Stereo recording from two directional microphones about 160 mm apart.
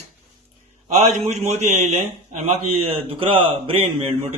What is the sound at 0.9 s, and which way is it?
A man's voice, 45° right (ahead or behind).